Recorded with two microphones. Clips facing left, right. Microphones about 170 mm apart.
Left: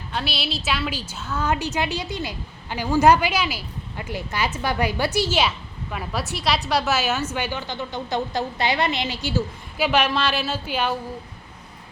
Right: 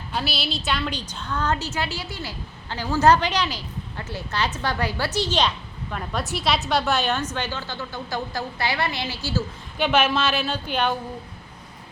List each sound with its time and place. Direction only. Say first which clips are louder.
0.1 s a woman's voice: even; centre (ahead or behind); by 9.4 s 15° left (ahead or behind)
9.7 s a woman's voice: even; centre (ahead or behind)